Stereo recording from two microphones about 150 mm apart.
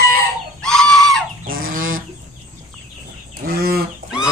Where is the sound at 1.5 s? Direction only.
75° right (ahead or behind).